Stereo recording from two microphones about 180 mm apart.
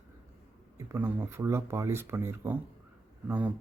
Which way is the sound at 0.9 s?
10° right (ahead or behind).